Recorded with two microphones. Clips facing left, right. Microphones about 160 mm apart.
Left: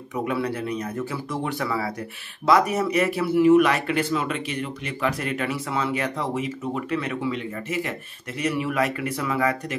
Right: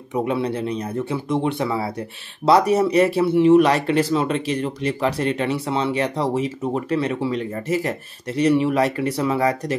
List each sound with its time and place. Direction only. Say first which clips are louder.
0.1 s speech: right 4 dB; 25° right (ahead or behind)